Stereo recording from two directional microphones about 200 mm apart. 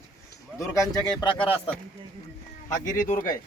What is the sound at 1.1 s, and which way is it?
Speech, 25° left (ahead or behind).